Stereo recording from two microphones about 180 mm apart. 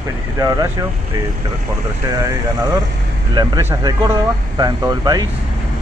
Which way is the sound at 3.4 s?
20° right (ahead or behind).